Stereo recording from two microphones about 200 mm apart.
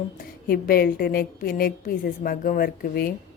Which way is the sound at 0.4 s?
45° left (ahead or behind).